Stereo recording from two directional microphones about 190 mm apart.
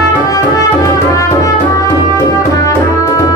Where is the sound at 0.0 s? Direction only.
15° left (ahead or behind).